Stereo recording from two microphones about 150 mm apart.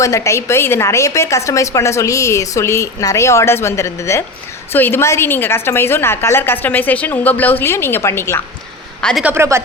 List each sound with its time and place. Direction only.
0.0 s a woman's voice: 20° left (ahead or behind)
9.0 s a woman's voice: 5° left (ahead or behind)
9.2 s speech: 15° right (ahead or behind)